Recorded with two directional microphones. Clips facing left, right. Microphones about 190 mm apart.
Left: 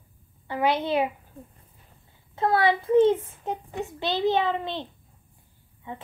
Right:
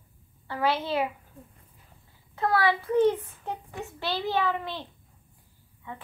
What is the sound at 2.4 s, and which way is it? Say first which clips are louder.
A child's voice: left 3 dB; 20° left (ahead or behind).